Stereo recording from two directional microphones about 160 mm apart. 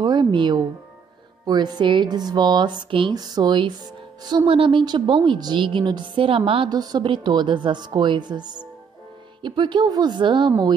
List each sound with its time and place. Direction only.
0.0 s a woman's voice: 25° right (ahead or behind)